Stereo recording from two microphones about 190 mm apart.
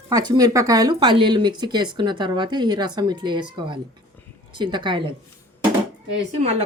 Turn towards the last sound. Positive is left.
turn(degrees=-35)  # may be behind; listen again after turning